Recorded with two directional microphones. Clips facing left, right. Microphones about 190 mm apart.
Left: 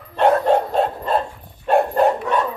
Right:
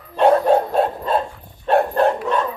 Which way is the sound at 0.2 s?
10° right (ahead or behind).